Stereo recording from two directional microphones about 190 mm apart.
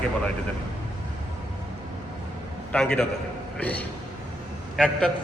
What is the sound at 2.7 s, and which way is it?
A man's voice, 5° left (ahead or behind).